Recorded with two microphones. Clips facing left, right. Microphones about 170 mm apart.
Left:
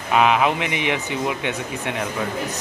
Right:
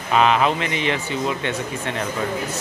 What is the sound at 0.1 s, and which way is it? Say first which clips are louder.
Speech: even; 10° left (ahead or behind).